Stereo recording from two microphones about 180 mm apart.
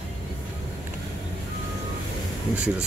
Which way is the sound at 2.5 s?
5° right (ahead or behind).